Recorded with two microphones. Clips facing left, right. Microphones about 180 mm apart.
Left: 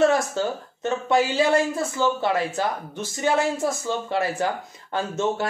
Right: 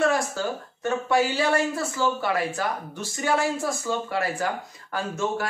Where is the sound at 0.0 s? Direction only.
25° left (ahead or behind).